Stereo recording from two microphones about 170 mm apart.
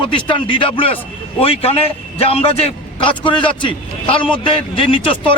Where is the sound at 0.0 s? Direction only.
30° left (ahead or behind).